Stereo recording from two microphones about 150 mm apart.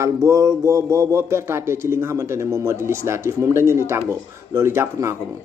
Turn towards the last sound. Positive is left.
turn(degrees=-20)  # may be behind; listen again after turning